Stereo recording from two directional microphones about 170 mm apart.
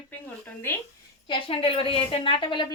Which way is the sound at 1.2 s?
30° left (ahead or behind).